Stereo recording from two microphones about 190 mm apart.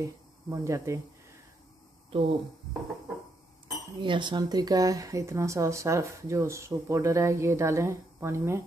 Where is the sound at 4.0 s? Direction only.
25° right (ahead or behind).